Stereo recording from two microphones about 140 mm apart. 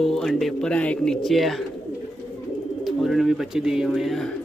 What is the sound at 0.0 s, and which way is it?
Speech, 5° left (ahead or behind).